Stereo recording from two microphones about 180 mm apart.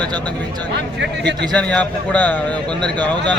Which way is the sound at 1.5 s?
10° left (ahead or behind).